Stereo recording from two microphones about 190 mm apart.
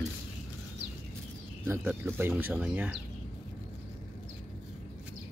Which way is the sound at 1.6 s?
10° right (ahead or behind).